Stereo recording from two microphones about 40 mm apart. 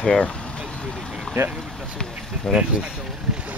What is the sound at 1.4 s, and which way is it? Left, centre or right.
Speech, right.